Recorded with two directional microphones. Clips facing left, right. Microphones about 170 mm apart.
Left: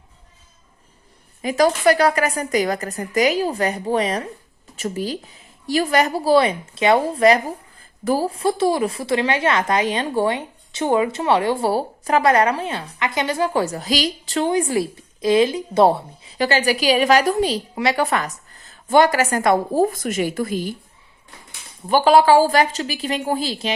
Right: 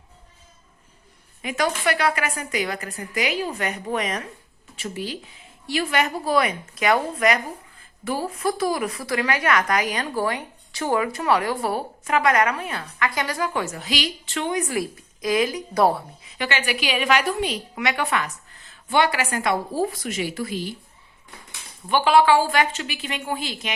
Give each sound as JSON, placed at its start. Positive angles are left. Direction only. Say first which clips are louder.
{"t": 1.4, "sound": "a woman's voice", "louder": "left 7 dB", "side_deg": 35}
{"t": 21.8, "sound": "a woman's voice", "louder": "left 4 dB", "side_deg": 40}